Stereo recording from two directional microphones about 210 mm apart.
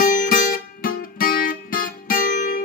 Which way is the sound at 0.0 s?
40° left (ahead or behind).